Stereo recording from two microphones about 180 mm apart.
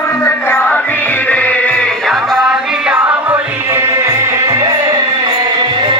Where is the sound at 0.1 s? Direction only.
15° left (ahead or behind).